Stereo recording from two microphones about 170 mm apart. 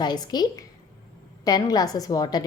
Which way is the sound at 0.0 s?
25° left (ahead or behind).